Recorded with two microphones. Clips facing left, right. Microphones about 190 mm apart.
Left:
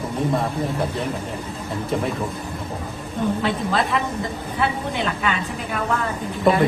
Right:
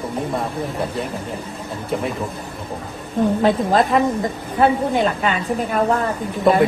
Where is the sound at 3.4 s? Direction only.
45° right (ahead or behind).